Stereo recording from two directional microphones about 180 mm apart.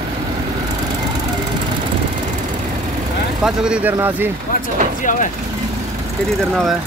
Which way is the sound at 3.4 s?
5° right (ahead or behind).